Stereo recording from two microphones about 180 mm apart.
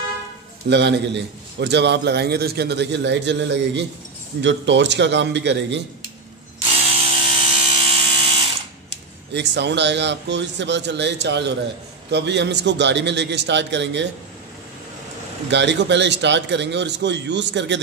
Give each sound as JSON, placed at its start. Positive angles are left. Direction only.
{"t": 0.7, "sound": "a man's voice", "side_deg": -75}
{"t": 7.1, "sound": "a sound", "side_deg": -30}
{"t": 9.3, "sound": "a man's voice", "side_deg": -70}
{"t": 15.5, "sound": "a man's voice", "side_deg": -80}